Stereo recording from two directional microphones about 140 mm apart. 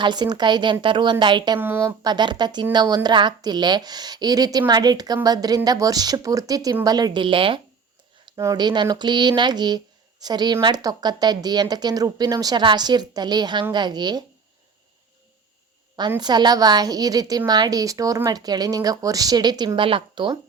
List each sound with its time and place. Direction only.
0.0 s speech: 30° right (ahead or behind)
1.5 s a woman's voice: 15° right (ahead or behind)
2.0 s a woman's voice: 30° right (ahead or behind)
8.4 s a woman's voice: 25° right (ahead or behind)
16.1 s a woman's voice: 30° right (ahead or behind)